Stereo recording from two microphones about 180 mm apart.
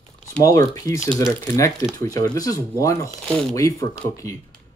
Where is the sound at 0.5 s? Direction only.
20° left (ahead or behind).